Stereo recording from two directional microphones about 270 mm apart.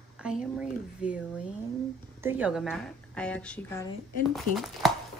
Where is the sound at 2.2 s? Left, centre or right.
Centre.